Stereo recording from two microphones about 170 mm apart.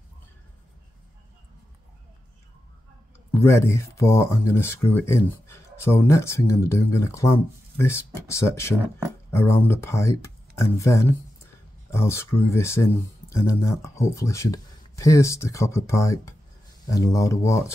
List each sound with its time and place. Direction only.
3.3 s speech: 15° left (ahead or behind)